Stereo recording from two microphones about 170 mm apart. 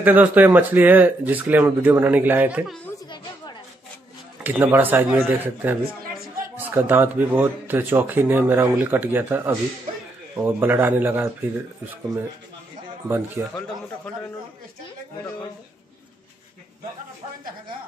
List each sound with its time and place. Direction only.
0.0 s a man's voice: 10° right (ahead or behind)
4.4 s a man's voice: 10° right (ahead or behind)
6.0 s chatter: 55° right (ahead or behind)
6.5 s a man's voice: 10° right (ahead or behind)
13.1 s a man's voice: 15° right (ahead or behind)